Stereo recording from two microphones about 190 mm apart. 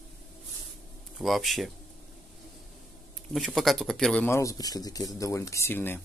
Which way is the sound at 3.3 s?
Centre (ahead or behind).